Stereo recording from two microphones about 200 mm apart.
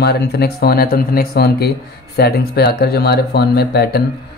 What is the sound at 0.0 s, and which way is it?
Speech, 55° left (ahead or behind).